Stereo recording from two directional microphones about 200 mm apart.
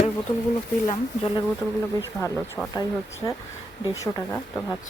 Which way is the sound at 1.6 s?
15° left (ahead or behind).